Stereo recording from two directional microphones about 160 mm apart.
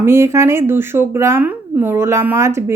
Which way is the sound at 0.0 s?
15° right (ahead or behind).